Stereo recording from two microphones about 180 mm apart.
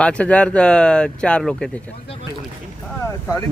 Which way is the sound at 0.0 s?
5° left (ahead or behind).